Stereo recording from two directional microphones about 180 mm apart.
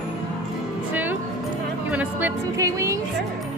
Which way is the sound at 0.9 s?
10° right (ahead or behind).